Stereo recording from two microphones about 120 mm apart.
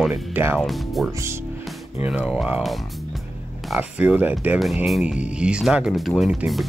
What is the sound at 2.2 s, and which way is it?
Speech, centre (ahead or behind).